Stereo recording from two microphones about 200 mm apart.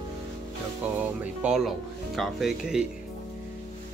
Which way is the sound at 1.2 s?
5° right (ahead or behind).